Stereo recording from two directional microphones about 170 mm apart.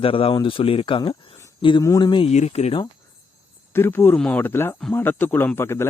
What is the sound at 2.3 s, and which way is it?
Speech, 40° left (ahead or behind).